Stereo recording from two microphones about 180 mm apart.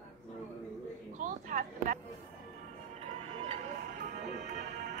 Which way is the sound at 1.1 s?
50° right (ahead or behind).